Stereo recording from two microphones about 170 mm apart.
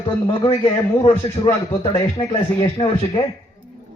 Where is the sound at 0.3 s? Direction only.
30° left (ahead or behind).